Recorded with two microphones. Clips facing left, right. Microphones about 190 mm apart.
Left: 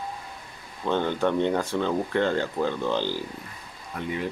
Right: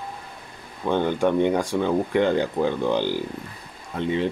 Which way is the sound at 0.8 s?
15° right (ahead or behind).